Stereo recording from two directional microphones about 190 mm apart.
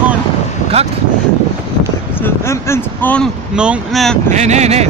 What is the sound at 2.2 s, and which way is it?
Speech, 15° left (ahead or behind).